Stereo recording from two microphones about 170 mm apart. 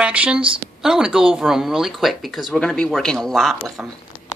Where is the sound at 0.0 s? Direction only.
5° right (ahead or behind).